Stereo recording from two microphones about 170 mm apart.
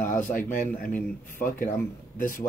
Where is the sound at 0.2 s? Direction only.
50° left (ahead or behind).